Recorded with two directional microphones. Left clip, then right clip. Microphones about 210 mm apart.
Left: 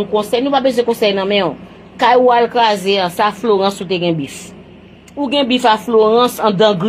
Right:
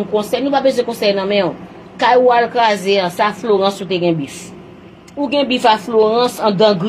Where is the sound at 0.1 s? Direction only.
30° left (ahead or behind).